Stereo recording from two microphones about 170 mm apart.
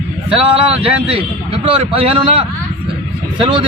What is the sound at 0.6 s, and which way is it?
A man's voice, 30° right (ahead or behind).